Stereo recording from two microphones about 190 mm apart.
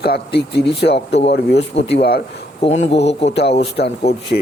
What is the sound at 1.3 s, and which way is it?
Speech, 60° left (ahead or behind).